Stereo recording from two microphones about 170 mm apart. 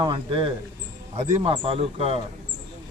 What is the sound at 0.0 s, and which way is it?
Speech, 30° right (ahead or behind).